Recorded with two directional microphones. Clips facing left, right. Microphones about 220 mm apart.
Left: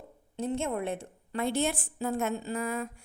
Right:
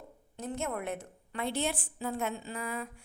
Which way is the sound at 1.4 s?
45° left (ahead or behind).